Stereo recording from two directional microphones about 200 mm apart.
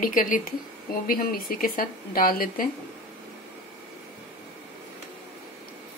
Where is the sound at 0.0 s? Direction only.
40° left (ahead or behind).